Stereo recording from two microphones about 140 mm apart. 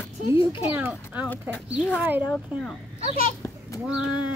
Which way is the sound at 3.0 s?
45° right (ahead or behind).